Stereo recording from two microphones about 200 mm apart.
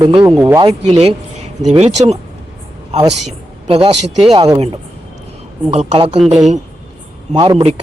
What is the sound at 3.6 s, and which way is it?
Speech, 25° right (ahead or behind).